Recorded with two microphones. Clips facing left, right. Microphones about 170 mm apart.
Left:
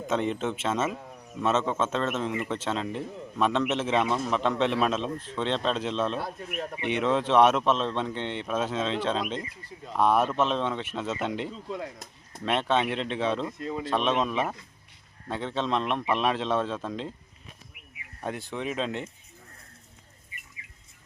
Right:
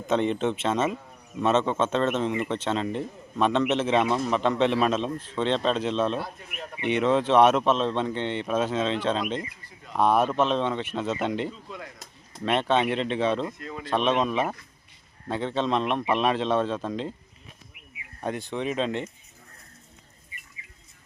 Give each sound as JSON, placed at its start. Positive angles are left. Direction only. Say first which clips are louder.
{"t": 0.1, "sound": "a man's voice", "louder": "right 4 dB", "side_deg": 5}
{"t": 6.2, "sound": "speech", "louder": "left 5 dB", "side_deg": 45}
{"t": 6.8, "sound": "a man's voice", "louder": "right 4 dB", "side_deg": 0}
{"t": 13.6, "sound": "speech", "louder": "left 5 dB", "side_deg": 25}
{"t": 13.8, "sound": "a man's voice", "louder": "right 3 dB", "side_deg": 0}
{"t": 18.2, "sound": "a man's voice", "louder": "right 3 dB", "side_deg": 0}